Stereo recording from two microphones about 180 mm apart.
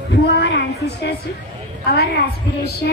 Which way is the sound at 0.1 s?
70° left (ahead or behind).